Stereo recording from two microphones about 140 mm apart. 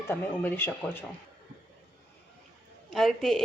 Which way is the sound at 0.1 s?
15° left (ahead or behind).